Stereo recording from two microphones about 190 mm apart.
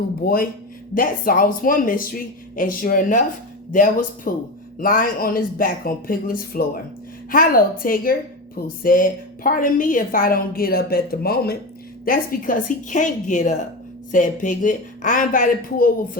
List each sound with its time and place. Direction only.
0.2 s a woman's voice: 55° left (ahead or behind)